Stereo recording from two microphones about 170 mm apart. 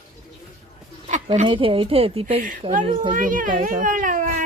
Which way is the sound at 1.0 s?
45° right (ahead or behind).